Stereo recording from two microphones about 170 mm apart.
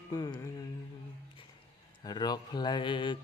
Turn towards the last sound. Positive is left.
turn(degrees=30)  # may be behind; listen again after turning